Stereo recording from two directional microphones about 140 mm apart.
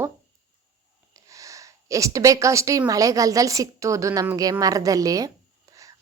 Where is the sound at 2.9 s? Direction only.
25° right (ahead or behind).